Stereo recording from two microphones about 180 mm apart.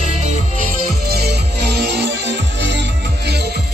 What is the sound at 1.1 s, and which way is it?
Music, 65° right (ahead or behind).